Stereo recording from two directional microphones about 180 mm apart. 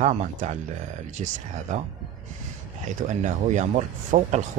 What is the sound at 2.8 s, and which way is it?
Speech, 40° right (ahead or behind).